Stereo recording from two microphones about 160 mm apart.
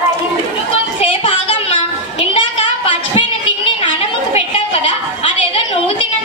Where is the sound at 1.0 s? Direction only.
35° left (ahead or behind).